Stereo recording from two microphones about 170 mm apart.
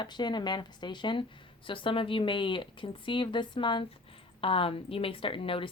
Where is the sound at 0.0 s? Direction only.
25° left (ahead or behind).